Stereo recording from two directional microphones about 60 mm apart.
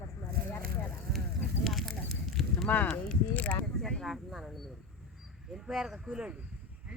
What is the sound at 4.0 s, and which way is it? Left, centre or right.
Speech, centre.